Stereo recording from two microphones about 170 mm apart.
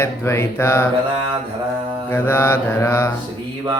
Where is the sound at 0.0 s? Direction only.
15° left (ahead or behind).